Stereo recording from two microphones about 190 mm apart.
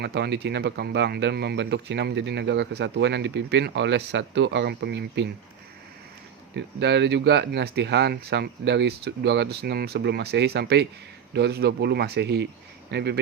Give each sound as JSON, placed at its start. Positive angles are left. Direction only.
{"t": 0.0, "sound": "speech", "side_deg": -60}
{"t": 6.6, "sound": "speech", "side_deg": -65}